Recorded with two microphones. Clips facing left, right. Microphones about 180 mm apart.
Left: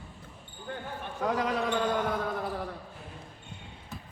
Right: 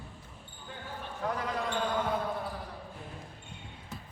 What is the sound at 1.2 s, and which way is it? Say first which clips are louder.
Basketball bounce: left 5 dB; 85° left.